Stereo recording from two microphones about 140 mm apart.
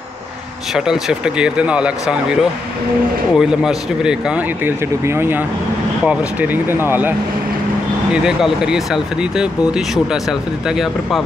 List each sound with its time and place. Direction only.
0.7 s speech: 5° right (ahead or behind)
3.3 s speech: 5° right (ahead or behind)
4.6 s speech: 15° right (ahead or behind); by 11.2 s centre (ahead or behind)